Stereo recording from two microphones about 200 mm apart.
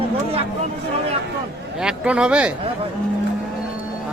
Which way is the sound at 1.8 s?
5° right (ahead or behind).